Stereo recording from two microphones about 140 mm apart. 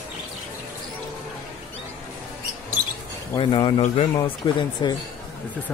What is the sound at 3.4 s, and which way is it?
Speech, 35° left (ahead or behind).